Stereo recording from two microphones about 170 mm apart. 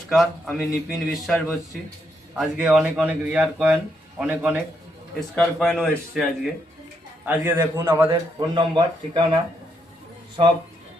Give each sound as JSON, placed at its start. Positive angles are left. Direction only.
{"t": 0.1, "sound": "a man's voice", "side_deg": 0}
{"t": 5.3, "sound": "speech", "side_deg": 5}
{"t": 7.3, "sound": "a man's voice", "side_deg": -10}